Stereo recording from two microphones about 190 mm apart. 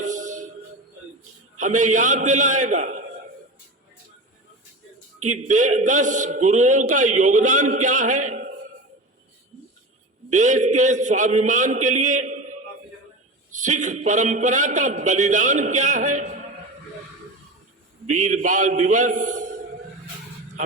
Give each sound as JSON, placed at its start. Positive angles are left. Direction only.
{"t": 0.0, "sound": "music", "side_deg": -40}
{"t": 1.5, "sound": "a man's voice", "side_deg": -40}
{"t": 5.3, "sound": "a man's voice", "side_deg": -40}
{"t": 10.2, "sound": "a man's voice", "side_deg": -40}
{"t": 18.1, "sound": "a man's voice", "side_deg": -40}